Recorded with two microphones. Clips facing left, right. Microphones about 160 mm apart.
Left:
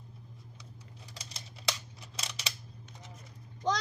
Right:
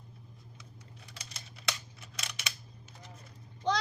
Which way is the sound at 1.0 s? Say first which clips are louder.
Left 2 dB; 35° left (ahead or behind).